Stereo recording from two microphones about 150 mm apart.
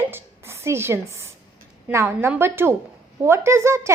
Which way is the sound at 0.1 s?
15° right (ahead or behind).